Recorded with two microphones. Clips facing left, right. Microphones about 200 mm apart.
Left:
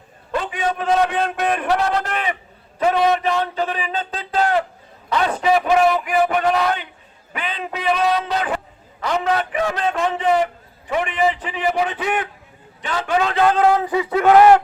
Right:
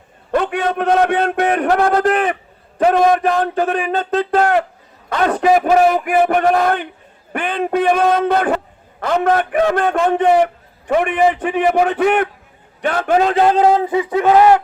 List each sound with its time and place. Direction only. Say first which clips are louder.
0.3 s a man's voice: right 5 dB; 65° right (ahead or behind)
13.1 s speech: right 4 dB; 40° right (ahead or behind)
13.4 s a sound: right 3 dB; 30° right (ahead or behind)